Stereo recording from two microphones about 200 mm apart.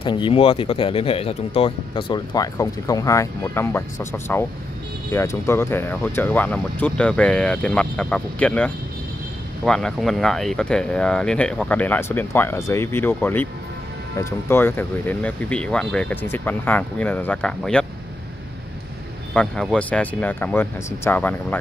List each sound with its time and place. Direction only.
0.0 s speech: 25° left (ahead or behind); by 13.5 s 10° left (ahead or behind)
14.5 s speech: 10° left (ahead or behind)
19.3 s speech: 5° left (ahead or behind)